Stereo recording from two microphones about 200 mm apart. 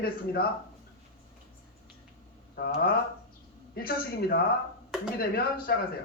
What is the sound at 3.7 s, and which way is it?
Speech, 45° left (ahead or behind).